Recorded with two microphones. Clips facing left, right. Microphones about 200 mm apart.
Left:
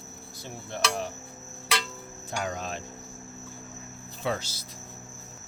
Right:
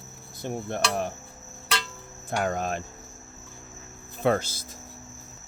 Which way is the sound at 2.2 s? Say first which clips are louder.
Right 6 dB; 50° right (ahead or behind).